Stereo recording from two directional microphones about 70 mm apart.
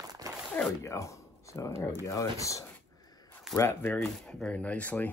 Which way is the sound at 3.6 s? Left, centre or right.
Left.